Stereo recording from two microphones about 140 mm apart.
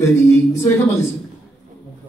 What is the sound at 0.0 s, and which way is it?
Speech, 20° left (ahead or behind).